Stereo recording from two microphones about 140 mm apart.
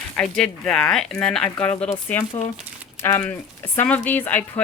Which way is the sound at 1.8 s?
20° left (ahead or behind).